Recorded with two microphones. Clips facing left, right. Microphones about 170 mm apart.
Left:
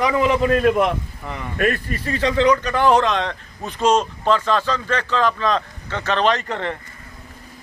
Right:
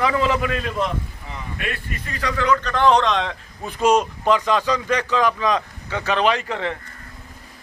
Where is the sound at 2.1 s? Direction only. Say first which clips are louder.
Left 6 dB; 25° left (ahead or behind).